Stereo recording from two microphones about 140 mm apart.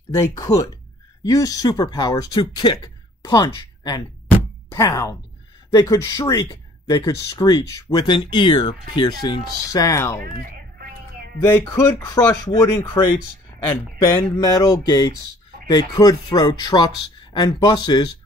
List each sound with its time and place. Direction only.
0.1 s speech: 25° left (ahead or behind)
11.6 s speech: 20° left (ahead or behind)